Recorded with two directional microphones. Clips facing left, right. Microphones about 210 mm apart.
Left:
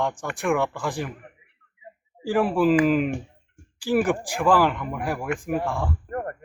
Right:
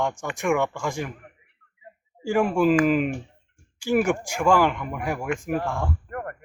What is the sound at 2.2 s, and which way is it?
Speech, centre (ahead or behind).